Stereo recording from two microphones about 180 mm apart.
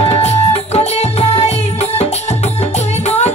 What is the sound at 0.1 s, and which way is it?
Music, 35° left (ahead or behind).